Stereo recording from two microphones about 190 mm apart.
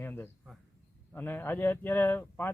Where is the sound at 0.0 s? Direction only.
10° left (ahead or behind).